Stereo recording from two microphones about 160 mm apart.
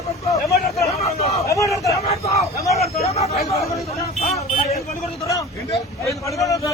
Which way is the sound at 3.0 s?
40° left (ahead or behind).